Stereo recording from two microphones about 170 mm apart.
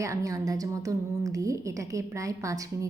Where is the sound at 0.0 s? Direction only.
20° right (ahead or behind).